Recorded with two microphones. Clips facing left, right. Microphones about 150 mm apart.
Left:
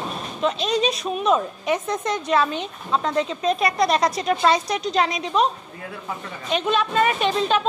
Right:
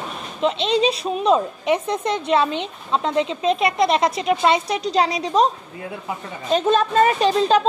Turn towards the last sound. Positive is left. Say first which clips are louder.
# right 4 dB
turn(degrees=-35)  # may be behind; listen again after turning